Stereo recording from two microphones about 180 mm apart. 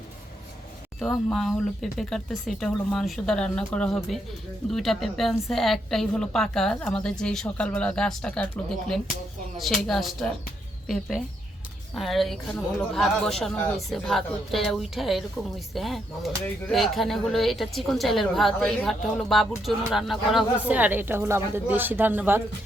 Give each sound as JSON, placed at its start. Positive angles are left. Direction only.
{"t": 0.9, "sound": "a woman's voice", "side_deg": 5}
{"t": 9.6, "sound": "a woman's voice", "side_deg": 0}